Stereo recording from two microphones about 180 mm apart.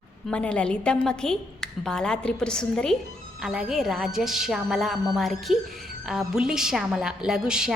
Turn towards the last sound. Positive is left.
turn(degrees=-5)  # may be behind; listen again after turning